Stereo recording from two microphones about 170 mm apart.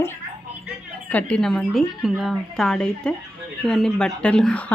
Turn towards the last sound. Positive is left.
turn(degrees=5)  # may be behind; listen again after turning